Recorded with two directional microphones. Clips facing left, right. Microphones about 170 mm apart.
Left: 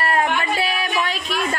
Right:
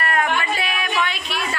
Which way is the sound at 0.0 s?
30° left (ahead or behind).